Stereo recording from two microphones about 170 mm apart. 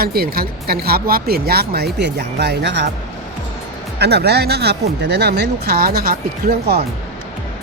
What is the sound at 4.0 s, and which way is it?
Speech, 75° right (ahead or behind).